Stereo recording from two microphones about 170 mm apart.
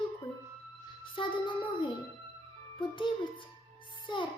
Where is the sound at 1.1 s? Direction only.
30° left (ahead or behind).